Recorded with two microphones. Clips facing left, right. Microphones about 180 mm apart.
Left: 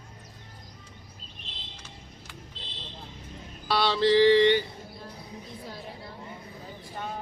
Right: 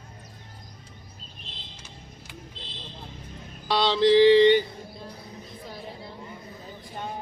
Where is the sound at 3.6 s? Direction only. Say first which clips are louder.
Right 3 dB; 20° right (ahead or behind).